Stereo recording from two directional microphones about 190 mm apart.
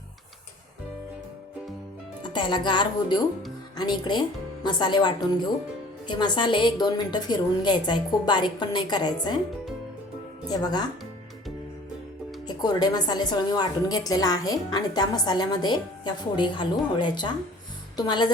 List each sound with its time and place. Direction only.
2.3 s a woman's voice: 25° left (ahead or behind)
10.5 s a woman's voice: 20° left (ahead or behind)
12.5 s a woman's voice: 20° left (ahead or behind)